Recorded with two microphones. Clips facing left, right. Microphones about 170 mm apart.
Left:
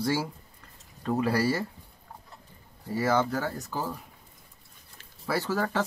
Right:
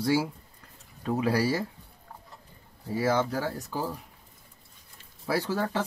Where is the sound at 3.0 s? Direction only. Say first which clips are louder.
Even; 10° right (ahead or behind).